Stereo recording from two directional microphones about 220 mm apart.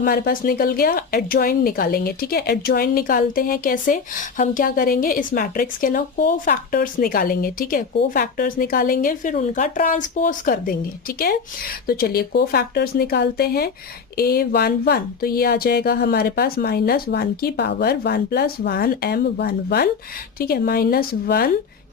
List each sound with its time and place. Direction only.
0.0 s speech: 40° left (ahead or behind)
11.9 s speech: 45° left (ahead or behind)